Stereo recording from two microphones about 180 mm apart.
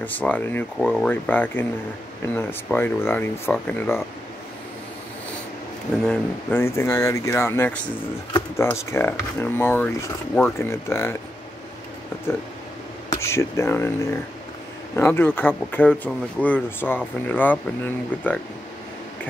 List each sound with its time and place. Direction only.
0.0 s speech: 10° left (ahead or behind)
6.0 s speech: 10° left (ahead or behind)
13.1 s speech: 15° left (ahead or behind)
15.0 s speech: 10° left (ahead or behind)